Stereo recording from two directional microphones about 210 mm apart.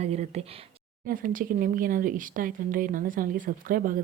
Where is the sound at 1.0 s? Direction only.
40° right (ahead or behind).